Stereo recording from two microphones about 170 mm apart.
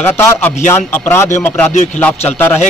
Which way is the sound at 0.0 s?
15° left (ahead or behind).